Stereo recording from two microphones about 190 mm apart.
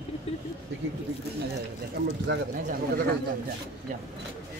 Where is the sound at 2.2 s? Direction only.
55° right (ahead or behind).